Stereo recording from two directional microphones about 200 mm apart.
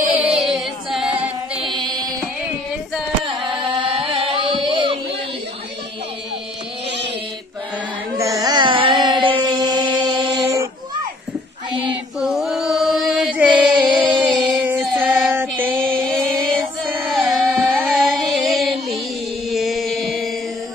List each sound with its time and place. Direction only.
0.1 s music: 5° right (ahead or behind)
1.8 s music: 20° right (ahead or behind)
3.9 s music: 30° right (ahead or behind)
8.2 s carnatic music: 15° right (ahead or behind)
10.0 s a sound: 20° right (ahead or behind)
12.2 s chant: centre (ahead or behind)
14.6 s female singing: 5° right (ahead or behind)
16.0 s music: 5° left (ahead or behind)
19.5 s chant: centre (ahead or behind)